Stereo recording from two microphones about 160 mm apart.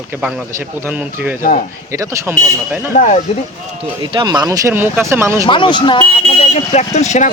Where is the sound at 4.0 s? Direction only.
30° right (ahead or behind).